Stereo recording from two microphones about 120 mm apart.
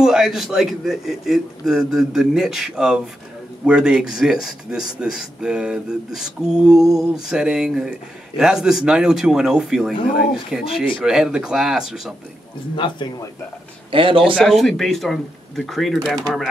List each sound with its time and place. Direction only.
0.0 s a man's voice: 5° right (ahead or behind)
12.7 s speech: 45° left (ahead or behind)
13.9 s speech: 45° right (ahead or behind)
14.4 s a man's voice: 5° left (ahead or behind)